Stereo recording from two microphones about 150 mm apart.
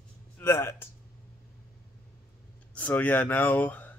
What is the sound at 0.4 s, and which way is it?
Speech, 15° left (ahead or behind).